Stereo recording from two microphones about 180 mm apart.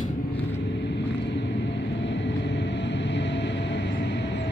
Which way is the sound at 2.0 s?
80° left.